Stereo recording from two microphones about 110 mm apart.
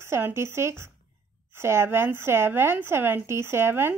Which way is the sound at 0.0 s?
25° right (ahead or behind).